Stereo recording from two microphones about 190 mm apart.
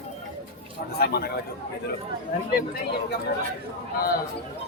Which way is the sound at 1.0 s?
55° left (ahead or behind).